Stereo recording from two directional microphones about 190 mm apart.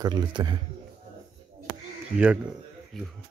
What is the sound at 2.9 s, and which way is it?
Speech, centre (ahead or behind).